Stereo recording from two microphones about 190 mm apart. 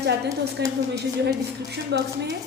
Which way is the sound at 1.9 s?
60° right (ahead or behind).